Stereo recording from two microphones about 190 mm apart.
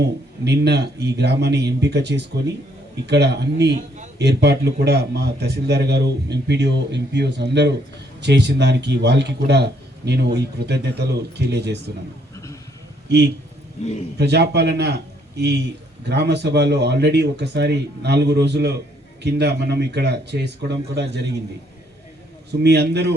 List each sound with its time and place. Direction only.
0.4 s a man's voice: 60° right (ahead or behind)
13.1 s a man's voice: 60° right (ahead or behind)
22.6 s a man's voice: 60° right (ahead or behind)